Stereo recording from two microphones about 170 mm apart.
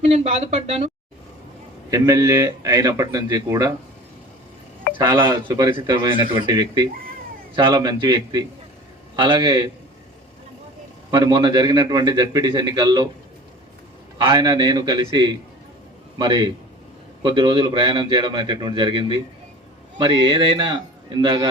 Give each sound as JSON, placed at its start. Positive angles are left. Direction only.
{"t": 0.1, "sound": "speech", "side_deg": -40}
{"t": 1.9, "sound": "a man's voice", "side_deg": -20}
{"t": 4.9, "sound": "a man's voice", "side_deg": -30}
{"t": 11.1, "sound": "a man's voice", "side_deg": -25}
{"t": 14.2, "sound": "a man's voice", "side_deg": -25}